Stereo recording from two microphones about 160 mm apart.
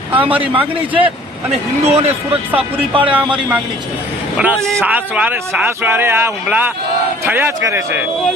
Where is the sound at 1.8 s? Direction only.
40° right (ahead or behind).